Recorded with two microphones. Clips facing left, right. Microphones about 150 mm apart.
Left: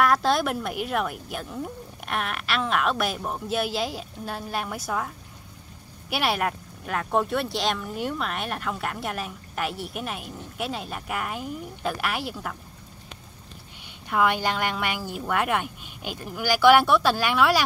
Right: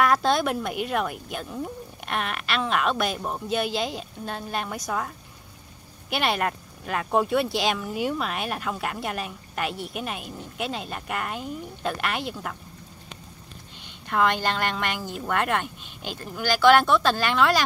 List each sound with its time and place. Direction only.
0.0 s speech: centre (ahead or behind)
14.0 s speech: 10° left (ahead or behind)